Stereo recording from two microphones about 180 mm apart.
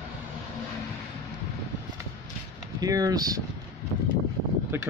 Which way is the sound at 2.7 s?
20° right (ahead or behind).